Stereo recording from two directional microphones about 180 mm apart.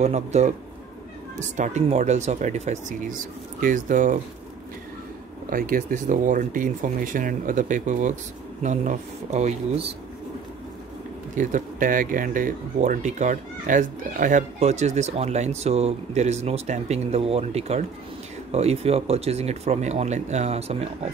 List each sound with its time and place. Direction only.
0.0 s speech: 40° right (ahead or behind)
5.5 s speech: 50° right (ahead or behind)
11.3 s speech: 45° right (ahead or behind)